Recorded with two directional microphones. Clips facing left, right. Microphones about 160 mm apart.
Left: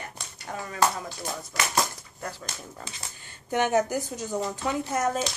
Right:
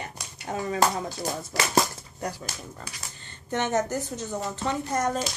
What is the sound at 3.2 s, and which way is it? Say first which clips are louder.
Speech: left 3 dB; 10° left (ahead or behind).